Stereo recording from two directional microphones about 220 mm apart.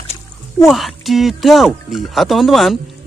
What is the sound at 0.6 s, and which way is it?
Speech, centre (ahead or behind).